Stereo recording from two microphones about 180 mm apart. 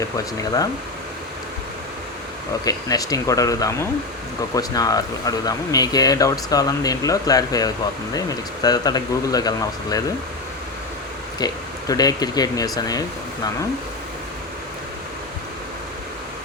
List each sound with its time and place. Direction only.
2.6 s speech: 20° left (ahead or behind)
11.3 s speech: 20° left (ahead or behind)